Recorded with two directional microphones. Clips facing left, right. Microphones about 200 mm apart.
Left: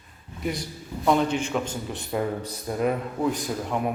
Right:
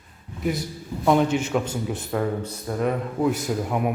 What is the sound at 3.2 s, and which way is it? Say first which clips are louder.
Speech: right 5 dB; 5° right (ahead or behind).